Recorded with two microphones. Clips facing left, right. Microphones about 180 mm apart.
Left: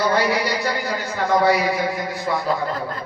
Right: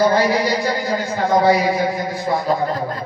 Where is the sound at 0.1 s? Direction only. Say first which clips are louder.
Right 3 dB; 30° right (ahead or behind).